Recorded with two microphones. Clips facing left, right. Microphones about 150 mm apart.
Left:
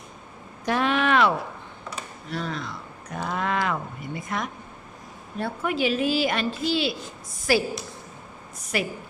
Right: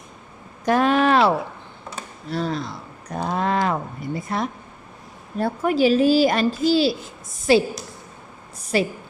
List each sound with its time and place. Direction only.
0.6 s a sound: 45° right (ahead or behind)
2.3 s speech: 35° right (ahead or behind)
7.5 s a woman's voice: 25° right (ahead or behind)
8.7 s a woman's voice: 30° right (ahead or behind)